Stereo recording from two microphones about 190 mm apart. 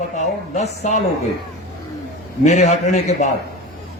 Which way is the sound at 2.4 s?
40° left (ahead or behind).